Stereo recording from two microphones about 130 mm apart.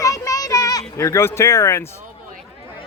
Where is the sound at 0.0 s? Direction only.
25° left (ahead or behind).